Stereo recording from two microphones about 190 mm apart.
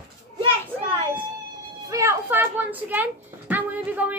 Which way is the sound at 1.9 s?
15° right (ahead or behind).